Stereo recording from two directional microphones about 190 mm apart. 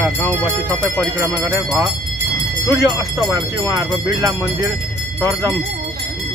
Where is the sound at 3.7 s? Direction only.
20° right (ahead or behind).